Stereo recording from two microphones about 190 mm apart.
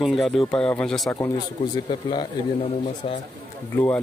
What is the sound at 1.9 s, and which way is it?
Speech, 25° left (ahead or behind).